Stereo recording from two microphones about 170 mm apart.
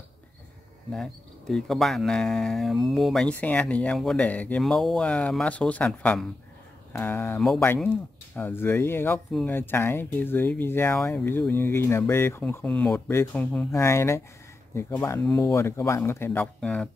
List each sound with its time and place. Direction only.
0.9 s speech: centre (ahead or behind)
9.3 s speech: 5° left (ahead or behind)
9.6 s speech: 15° left (ahead or behind)